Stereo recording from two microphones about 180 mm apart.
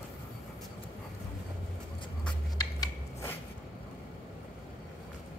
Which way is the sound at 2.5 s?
20° left (ahead or behind).